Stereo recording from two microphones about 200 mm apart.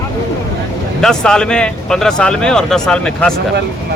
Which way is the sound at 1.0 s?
5° left (ahead or behind).